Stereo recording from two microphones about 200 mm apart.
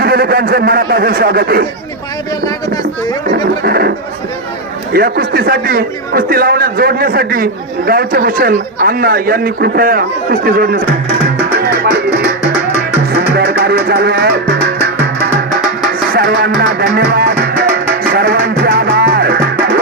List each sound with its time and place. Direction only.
0.0 s speech: 50° right (ahead or behind)
3.2 s a man's voice: 50° right (ahead or behind)
4.9 s a man's voice: 45° right (ahead or behind)
13.1 s music: 50° right (ahead or behind)
16.1 s a man's voice: 50° right (ahead or behind)
18.1 s music: 50° right (ahead or behind)